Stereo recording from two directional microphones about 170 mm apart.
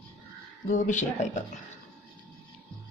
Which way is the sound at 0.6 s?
45° left (ahead or behind).